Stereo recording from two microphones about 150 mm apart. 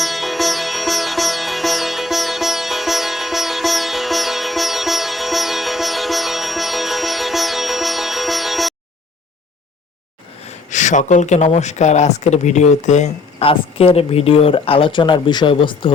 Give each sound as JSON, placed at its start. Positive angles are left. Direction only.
{"t": 0.0, "sound": "sitar", "side_deg": 0}
{"t": 10.5, "sound": "speech", "side_deg": 55}